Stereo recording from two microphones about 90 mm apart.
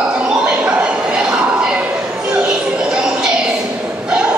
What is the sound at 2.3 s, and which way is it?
Music, 10° right (ahead or behind).